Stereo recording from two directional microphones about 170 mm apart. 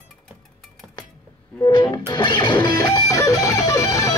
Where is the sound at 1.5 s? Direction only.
20° left (ahead or behind).